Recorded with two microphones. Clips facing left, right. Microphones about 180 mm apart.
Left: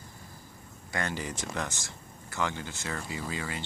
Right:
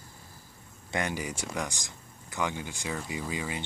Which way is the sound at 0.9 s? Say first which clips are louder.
Right 2 dB; 15° right (ahead or behind).